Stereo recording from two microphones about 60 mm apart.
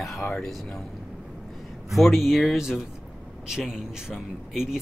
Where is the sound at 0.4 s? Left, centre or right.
Centre.